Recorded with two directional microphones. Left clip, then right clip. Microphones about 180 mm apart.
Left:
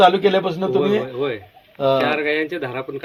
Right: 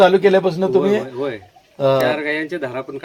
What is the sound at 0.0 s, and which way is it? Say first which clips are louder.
A man's voice: right 2 dB; 60° right (ahead or behind).